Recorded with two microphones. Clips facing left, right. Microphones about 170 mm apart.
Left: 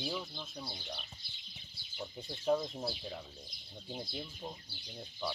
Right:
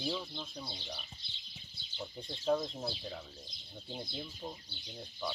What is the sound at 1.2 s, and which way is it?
Speech, 25° right (ahead or behind).